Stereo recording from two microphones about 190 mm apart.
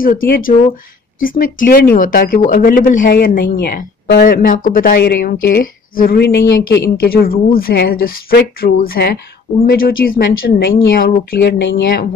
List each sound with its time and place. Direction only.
0.0 s speech: 50° left (ahead or behind)